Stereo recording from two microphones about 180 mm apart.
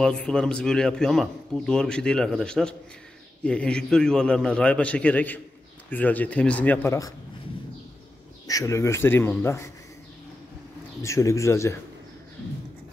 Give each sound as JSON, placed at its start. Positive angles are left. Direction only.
{"t": 0.0, "sound": "a man's voice", "side_deg": 5}
{"t": 8.5, "sound": "a man's voice", "side_deg": 20}
{"t": 11.0, "sound": "a man's voice", "side_deg": 15}